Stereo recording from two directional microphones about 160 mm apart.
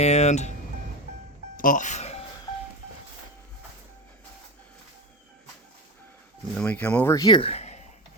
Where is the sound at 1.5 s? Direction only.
55° left (ahead or behind).